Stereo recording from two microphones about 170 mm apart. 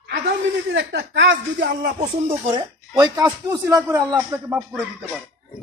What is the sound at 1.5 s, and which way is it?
Speech, 55° right (ahead or behind).